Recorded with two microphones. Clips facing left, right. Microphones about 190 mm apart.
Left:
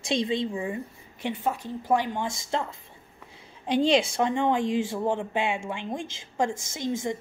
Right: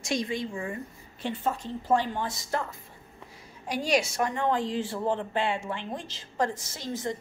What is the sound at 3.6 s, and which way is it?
A woman's voice, 25° left (ahead or behind).